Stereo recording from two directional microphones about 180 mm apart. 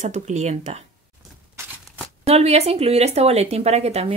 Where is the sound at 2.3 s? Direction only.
35° right (ahead or behind).